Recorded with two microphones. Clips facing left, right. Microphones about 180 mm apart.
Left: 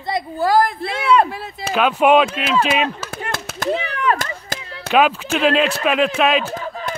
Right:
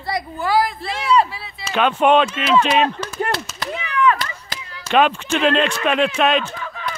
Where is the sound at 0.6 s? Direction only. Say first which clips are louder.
Left 3 dB; 55° left (ahead or behind).